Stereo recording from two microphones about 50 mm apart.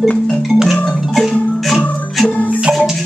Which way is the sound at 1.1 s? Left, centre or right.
Centre.